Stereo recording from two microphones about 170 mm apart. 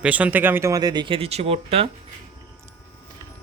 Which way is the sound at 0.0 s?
10° right (ahead or behind).